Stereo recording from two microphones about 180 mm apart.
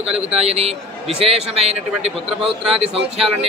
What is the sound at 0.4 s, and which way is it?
A man's voice, 35° right (ahead or behind).